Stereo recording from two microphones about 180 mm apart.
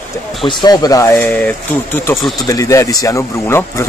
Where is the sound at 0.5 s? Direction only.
25° left (ahead or behind).